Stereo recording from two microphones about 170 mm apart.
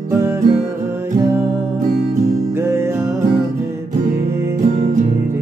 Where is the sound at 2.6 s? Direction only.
15° right (ahead or behind).